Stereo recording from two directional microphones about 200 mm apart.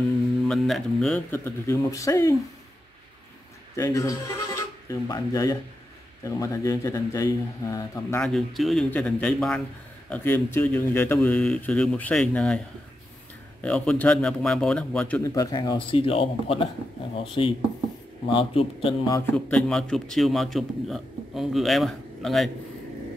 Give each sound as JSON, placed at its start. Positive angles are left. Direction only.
{"t": 0.5, "sound": "a man's voice", "side_deg": 0}
{"t": 3.7, "sound": "a man's voice", "side_deg": 15}
{"t": 8.3, "sound": "a man's voice", "side_deg": 0}
{"t": 13.6, "sound": "a man's voice", "side_deg": 5}
{"t": 19.3, "sound": "a man's voice", "side_deg": 5}